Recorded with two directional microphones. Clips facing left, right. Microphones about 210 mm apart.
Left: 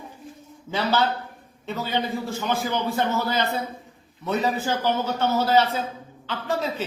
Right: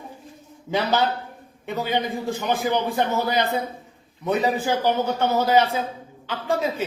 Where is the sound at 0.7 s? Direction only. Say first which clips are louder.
Right 1 dB; 15° right (ahead or behind).